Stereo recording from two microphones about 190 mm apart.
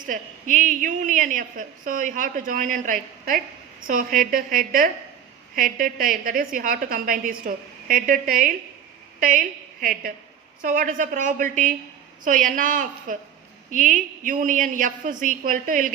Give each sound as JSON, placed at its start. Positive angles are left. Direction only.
{"t": 0.0, "sound": "a woman's voice", "side_deg": -45}
{"t": 9.8, "sound": "a woman's voice", "side_deg": -50}